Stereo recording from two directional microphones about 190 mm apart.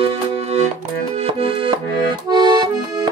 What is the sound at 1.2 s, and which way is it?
Music, 30° right (ahead or behind).